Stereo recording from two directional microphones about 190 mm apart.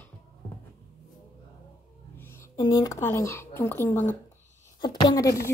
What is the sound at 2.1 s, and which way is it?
A woman's voice, 10° left (ahead or behind).